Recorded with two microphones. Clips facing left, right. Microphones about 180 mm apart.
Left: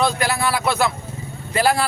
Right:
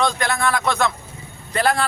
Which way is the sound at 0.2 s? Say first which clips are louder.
Even; 5° left (ahead or behind).